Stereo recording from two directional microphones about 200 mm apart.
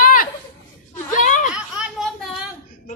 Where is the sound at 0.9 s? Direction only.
40° left (ahead or behind).